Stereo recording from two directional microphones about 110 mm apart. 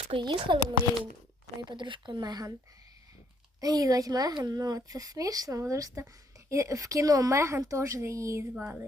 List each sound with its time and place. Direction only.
0.1 s speech: 45° right (ahead or behind)
1.7 s speech: 45° right (ahead or behind)
3.6 s a woman's voice: 35° right (ahead or behind); by 8.9 s 20° right (ahead or behind)